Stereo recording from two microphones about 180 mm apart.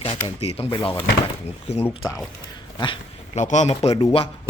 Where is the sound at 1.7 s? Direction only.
35° left (ahead or behind).